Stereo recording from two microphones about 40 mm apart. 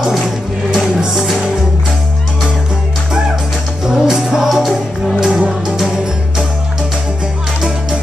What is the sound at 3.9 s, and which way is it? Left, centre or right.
Music, centre.